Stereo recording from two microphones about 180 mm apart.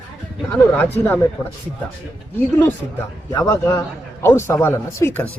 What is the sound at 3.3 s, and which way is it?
Speech, 20° left (ahead or behind).